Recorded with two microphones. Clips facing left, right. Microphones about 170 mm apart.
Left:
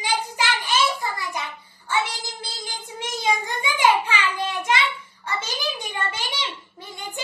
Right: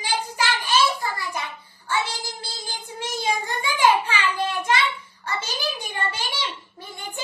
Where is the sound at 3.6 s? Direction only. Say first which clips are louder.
Right 2 dB; 20° left (ahead or behind).